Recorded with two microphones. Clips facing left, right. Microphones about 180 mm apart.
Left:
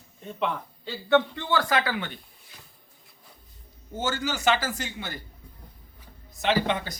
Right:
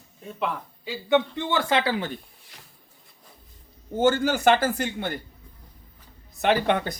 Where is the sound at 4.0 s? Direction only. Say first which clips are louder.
Right 7 dB; 55° right (ahead or behind).